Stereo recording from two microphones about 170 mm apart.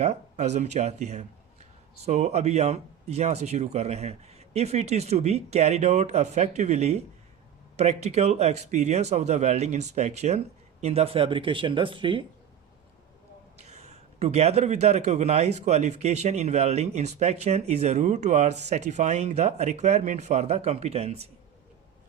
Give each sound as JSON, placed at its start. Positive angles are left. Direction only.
{"t": 0.0, "sound": "a man's voice", "side_deg": -40}
{"t": 13.6, "sound": "a man's voice", "side_deg": -40}